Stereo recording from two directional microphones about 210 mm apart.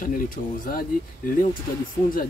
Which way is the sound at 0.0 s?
40° left (ahead or behind).